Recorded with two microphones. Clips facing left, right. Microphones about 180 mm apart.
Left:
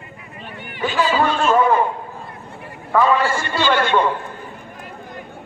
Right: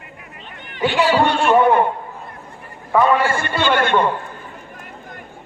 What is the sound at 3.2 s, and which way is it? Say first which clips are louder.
Speech: right 1 dB; 55° right (ahead or behind).